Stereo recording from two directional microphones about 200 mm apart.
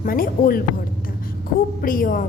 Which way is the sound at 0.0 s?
45° left (ahead or behind).